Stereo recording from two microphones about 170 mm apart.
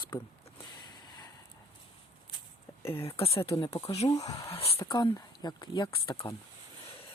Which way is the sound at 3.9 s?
40° left (ahead or behind).